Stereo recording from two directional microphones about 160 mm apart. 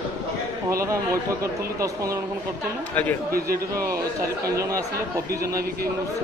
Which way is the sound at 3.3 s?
65° right (ahead or behind).